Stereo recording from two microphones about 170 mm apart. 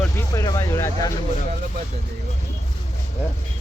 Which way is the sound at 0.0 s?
15° left (ahead or behind).